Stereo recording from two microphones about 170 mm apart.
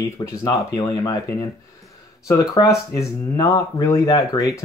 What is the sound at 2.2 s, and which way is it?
Speech, 20° left (ahead or behind).